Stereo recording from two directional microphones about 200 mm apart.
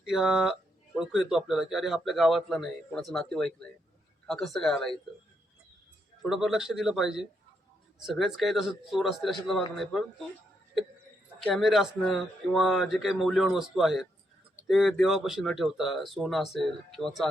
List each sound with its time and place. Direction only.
0.1 s speech: centre (ahead or behind)
6.2 s speech: centre (ahead or behind)
11.3 s speech: centre (ahead or behind)